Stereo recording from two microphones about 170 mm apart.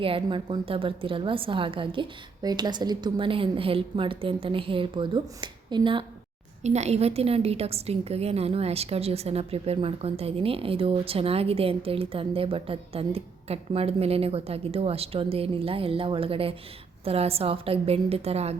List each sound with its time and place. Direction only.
0.0 s a woman's voice: 30° right (ahead or behind)
6.6 s a woman's voice: 40° right (ahead or behind)